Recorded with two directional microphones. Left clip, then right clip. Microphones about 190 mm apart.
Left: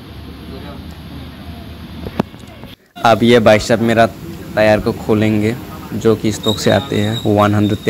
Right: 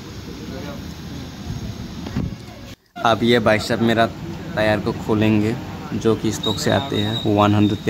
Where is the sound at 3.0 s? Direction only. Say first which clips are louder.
Left 6 dB; 15° left (ahead or behind).